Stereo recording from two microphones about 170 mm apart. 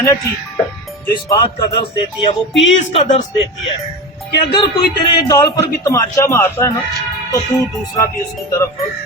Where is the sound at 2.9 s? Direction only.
40° left (ahead or behind).